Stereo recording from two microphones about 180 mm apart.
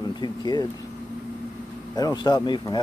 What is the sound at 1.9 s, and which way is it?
Speech, 20° left (ahead or behind).